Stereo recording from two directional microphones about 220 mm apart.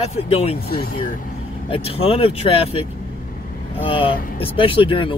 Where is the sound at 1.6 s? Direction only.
25° left (ahead or behind).